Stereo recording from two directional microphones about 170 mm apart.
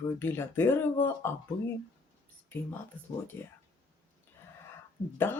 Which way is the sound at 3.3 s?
10° left (ahead or behind).